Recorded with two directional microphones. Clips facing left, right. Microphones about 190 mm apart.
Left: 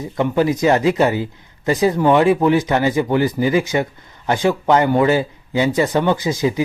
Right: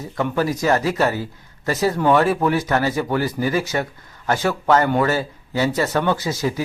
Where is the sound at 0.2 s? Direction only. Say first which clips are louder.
Left 4 dB; 20° left (ahead or behind).